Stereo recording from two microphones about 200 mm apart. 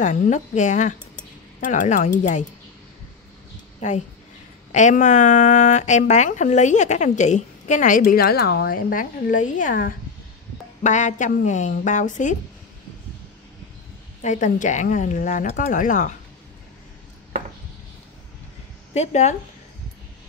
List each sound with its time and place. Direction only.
0.0 s speech: 40° left (ahead or behind)
3.8 s speech: 35° left (ahead or behind)
14.2 s speech: 40° left (ahead or behind)
18.9 s speech: 35° left (ahead or behind)